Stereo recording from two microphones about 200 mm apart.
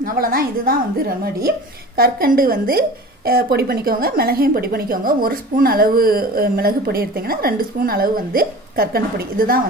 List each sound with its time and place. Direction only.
0.0 s a woman's voice: 45° right (ahead or behind)